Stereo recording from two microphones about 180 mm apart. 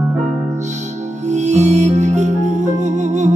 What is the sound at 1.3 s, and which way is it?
Music, 40° right (ahead or behind).